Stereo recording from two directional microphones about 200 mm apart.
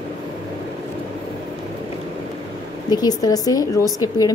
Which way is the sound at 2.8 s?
20° left (ahead or behind).